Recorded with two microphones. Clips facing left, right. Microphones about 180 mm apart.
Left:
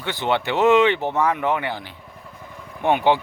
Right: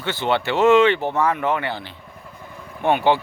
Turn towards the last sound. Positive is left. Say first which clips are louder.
# even
turn(degrees=15)  # may be behind; listen again after turning